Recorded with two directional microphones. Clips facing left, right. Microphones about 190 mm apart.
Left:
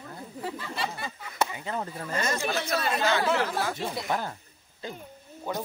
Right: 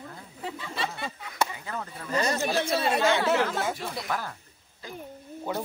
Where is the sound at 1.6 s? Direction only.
30° left (ahead or behind).